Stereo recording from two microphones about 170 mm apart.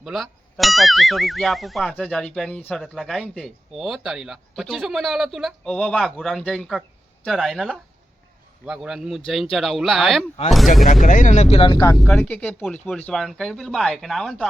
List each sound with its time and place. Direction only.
0.0 s speech: centre (ahead or behind)
11.0 s speech: 50° left (ahead or behind); by 11.9 s 25° left (ahead or behind)
11.9 s speech: centre (ahead or behind)